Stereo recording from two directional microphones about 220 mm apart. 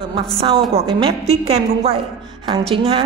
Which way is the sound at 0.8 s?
25° right (ahead or behind).